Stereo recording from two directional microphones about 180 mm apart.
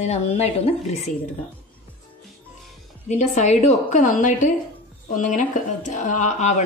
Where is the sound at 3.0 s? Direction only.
40° left (ahead or behind).